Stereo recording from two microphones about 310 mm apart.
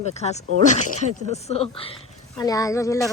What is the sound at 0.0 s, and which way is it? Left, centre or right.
Speech, left.